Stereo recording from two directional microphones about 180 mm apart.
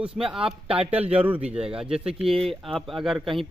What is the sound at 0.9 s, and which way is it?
Speech, 35° right (ahead or behind).